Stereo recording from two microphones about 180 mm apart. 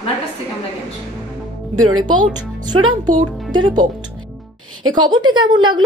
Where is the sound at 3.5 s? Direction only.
25° right (ahead or behind).